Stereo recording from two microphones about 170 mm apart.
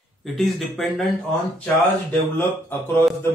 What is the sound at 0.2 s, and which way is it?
Speech, centre (ahead or behind).